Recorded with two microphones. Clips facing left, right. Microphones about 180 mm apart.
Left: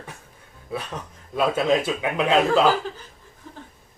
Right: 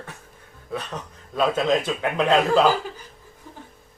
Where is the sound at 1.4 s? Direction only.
10° left (ahead or behind).